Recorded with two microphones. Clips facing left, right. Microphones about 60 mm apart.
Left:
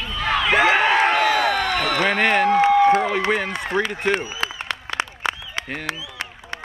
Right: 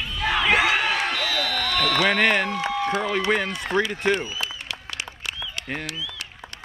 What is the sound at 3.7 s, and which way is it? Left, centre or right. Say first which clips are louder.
Speech: even; left.